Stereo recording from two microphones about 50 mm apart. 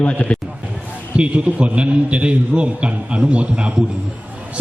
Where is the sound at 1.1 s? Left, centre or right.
Right.